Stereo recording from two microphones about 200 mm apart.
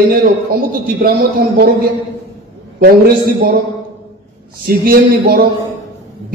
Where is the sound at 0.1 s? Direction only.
50° right (ahead or behind).